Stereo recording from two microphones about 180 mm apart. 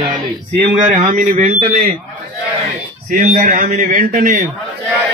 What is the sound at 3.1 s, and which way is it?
A man's voice, 45° right (ahead or behind).